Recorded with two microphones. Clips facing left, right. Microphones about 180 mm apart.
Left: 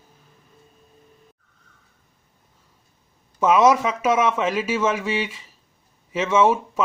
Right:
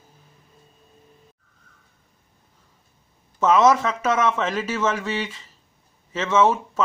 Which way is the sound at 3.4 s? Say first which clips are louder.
Left 1 dB; 10° left (ahead or behind).